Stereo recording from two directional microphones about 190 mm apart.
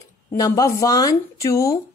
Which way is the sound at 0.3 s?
15° left (ahead or behind).